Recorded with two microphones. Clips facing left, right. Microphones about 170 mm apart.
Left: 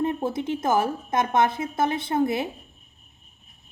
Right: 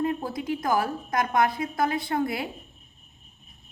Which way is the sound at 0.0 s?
25° left (ahead or behind).